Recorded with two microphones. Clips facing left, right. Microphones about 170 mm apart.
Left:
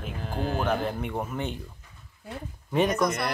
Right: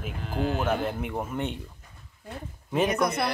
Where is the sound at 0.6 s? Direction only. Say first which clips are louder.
Even; centre (ahead or behind).